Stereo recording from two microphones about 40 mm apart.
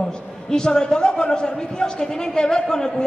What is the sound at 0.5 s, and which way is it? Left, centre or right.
A man's voice, centre.